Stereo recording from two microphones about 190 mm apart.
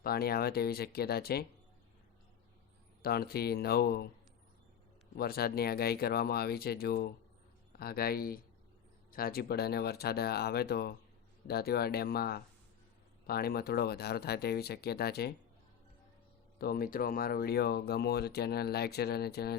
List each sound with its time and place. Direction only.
0.0 s speech: 55° left (ahead or behind)
3.0 s speech: 55° left (ahead or behind)
5.1 s speech: 55° left (ahead or behind)
16.6 s speech: 50° left (ahead or behind)